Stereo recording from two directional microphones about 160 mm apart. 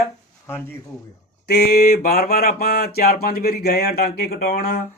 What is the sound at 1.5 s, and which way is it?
Speech, 70° left (ahead or behind).